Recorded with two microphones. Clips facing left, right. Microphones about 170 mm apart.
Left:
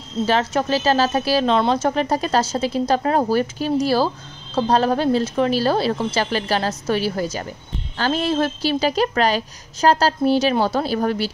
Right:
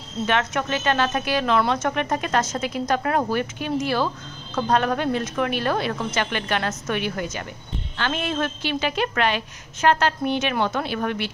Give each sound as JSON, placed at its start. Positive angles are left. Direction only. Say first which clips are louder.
{"t": 0.2, "sound": "a woman's voice", "louder": "left 4 dB", "side_deg": 30}